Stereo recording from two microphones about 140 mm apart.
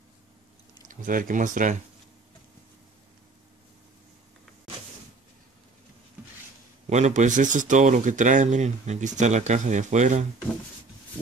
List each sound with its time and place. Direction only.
0.8 s speech: 75° right (ahead or behind)
6.9 s speech: 55° right (ahead or behind)